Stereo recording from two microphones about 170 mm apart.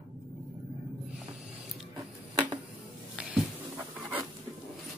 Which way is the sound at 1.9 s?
25° right (ahead or behind).